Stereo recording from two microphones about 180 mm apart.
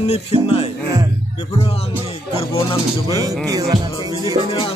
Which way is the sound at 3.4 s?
20° right (ahead or behind).